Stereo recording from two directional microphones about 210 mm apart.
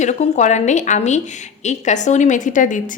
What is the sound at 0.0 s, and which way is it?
A woman's voice, 35° left (ahead or behind).